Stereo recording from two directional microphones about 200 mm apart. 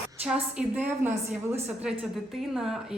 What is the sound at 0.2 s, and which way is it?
A woman's voice, 5° right (ahead or behind).